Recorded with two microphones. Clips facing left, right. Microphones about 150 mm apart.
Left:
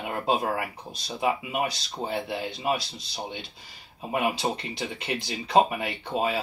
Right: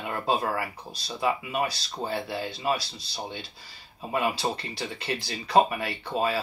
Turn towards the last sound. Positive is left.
turn(degrees=15)  # may be behind; listen again after turning